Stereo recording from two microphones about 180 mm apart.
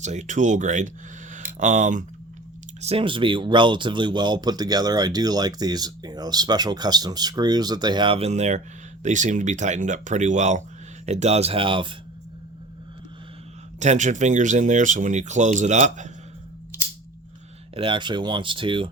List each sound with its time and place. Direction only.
0.0 s speech: 40° right (ahead or behind)
1.3 s a sound: 45° right (ahead or behind)
2.8 s speech: 30° right (ahead or behind)
13.7 s speech: 40° right (ahead or behind)
17.7 s speech: 25° right (ahead or behind)